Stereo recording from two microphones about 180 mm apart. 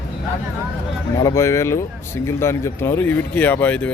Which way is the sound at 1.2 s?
20° left (ahead or behind).